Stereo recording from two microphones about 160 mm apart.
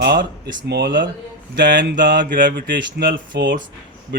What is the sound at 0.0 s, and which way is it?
A man's voice, 90° right.